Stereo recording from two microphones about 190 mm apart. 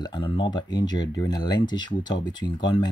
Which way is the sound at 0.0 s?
25° left (ahead or behind).